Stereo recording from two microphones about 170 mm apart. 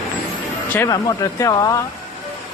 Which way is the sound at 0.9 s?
20° left (ahead or behind).